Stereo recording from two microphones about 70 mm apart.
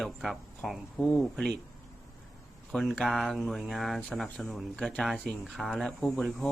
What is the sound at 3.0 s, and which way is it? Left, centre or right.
Speech, centre.